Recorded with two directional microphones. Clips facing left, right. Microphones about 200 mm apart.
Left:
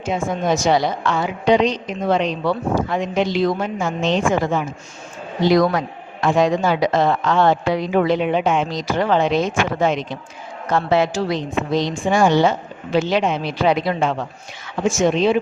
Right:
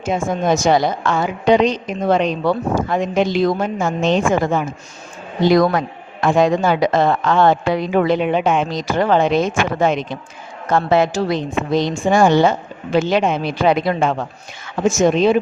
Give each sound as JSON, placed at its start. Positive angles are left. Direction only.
{"t": 0.0, "sound": "a woman's voice", "side_deg": -45}